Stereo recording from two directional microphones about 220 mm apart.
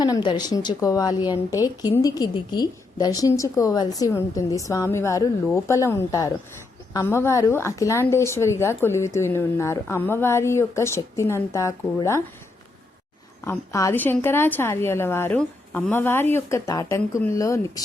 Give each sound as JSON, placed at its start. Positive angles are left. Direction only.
{"t": 0.0, "sound": "a woman's voice", "side_deg": 20}
{"t": 13.4, "sound": "a woman's voice", "side_deg": 10}